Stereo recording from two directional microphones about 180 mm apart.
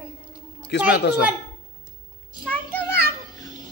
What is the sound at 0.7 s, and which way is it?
Speech, 75° left (ahead or behind).